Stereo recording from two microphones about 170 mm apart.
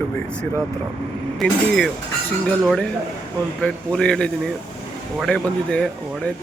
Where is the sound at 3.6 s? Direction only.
5° left (ahead or behind).